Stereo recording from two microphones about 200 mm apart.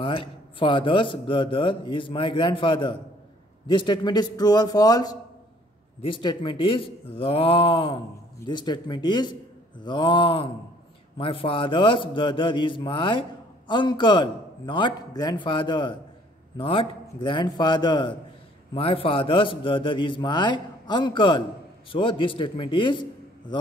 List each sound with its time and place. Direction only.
0.0 s a man's voice: 25° left (ahead or behind)